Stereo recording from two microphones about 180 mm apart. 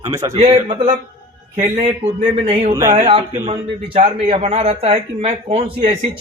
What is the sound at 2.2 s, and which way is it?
A man's voice, 35° right (ahead or behind).